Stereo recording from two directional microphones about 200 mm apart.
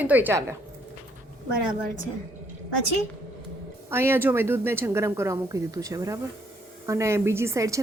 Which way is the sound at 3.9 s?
10° right (ahead or behind).